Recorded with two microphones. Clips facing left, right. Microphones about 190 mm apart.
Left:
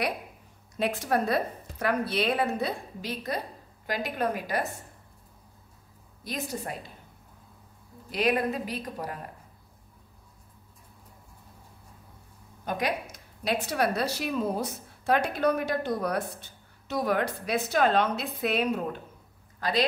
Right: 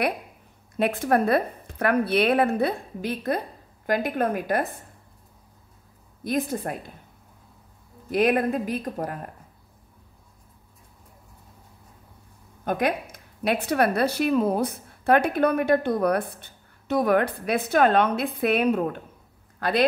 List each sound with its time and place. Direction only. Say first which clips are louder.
0.7 s speech: right 5 dB; 55° right (ahead or behind)
6.2 s speech: right 8 dB; 55° right (ahead or behind)
8.1 s speech: right 5 dB; 50° right (ahead or behind)
12.6 s speech: right 5 dB; 55° right (ahead or behind)